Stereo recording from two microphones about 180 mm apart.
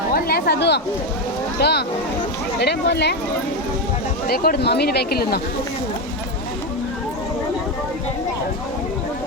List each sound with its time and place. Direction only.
0.1 s a sound: 60° left (ahead or behind)
1.5 s speech: 65° left (ahead or behind)
4.3 s speech: 60° left (ahead or behind)